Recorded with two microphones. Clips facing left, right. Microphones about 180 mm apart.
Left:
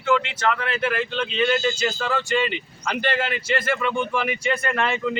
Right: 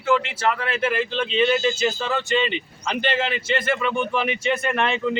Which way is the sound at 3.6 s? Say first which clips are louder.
Right 1 dB; centre (ahead or behind).